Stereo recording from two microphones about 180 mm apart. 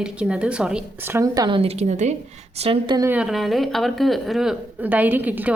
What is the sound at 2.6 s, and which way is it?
Speech, 30° right (ahead or behind).